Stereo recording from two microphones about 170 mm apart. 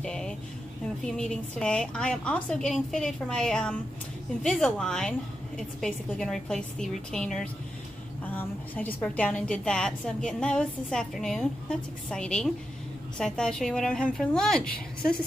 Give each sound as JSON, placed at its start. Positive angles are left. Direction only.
{"t": 0.0, "sound": "a woman's voice", "side_deg": 5}